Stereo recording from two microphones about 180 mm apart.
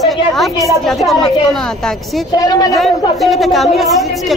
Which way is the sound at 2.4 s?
20° left (ahead or behind).